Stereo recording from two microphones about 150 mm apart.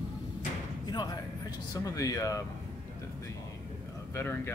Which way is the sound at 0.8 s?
30° left (ahead or behind).